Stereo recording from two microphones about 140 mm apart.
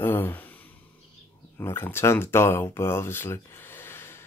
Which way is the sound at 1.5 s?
15° left (ahead or behind).